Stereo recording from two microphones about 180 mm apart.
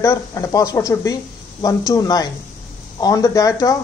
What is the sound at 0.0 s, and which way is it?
Speech, 15° left (ahead or behind).